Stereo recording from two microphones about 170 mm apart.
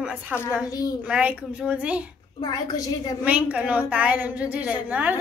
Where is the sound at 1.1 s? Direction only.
5° right (ahead or behind).